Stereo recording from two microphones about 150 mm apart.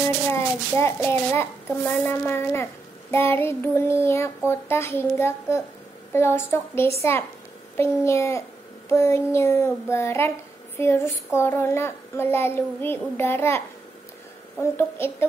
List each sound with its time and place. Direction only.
0.3 s child singing: 15° left (ahead or behind)
7.7 s a child's voice: 15° left (ahead or behind)
8.8 s child singing: 20° left (ahead or behind)
14.6 s child singing: 15° left (ahead or behind)